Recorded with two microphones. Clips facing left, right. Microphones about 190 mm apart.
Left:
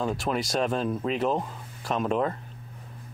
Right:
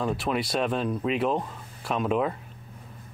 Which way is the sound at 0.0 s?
Centre (ahead or behind).